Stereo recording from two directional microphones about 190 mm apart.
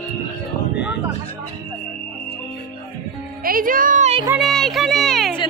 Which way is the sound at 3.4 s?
50° right (ahead or behind).